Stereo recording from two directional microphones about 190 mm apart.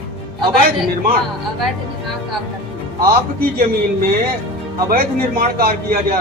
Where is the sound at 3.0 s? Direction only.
50° right (ahead or behind).